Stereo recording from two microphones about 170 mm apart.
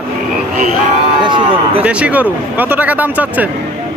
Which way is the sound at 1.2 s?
30° right (ahead or behind).